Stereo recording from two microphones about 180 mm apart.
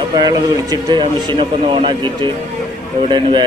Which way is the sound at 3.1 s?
25° right (ahead or behind).